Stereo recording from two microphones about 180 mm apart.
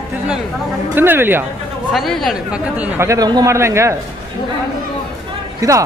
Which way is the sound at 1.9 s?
Centre (ahead or behind).